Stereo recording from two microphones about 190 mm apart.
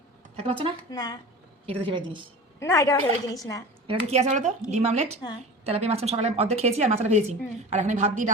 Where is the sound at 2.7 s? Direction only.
20° left (ahead or behind).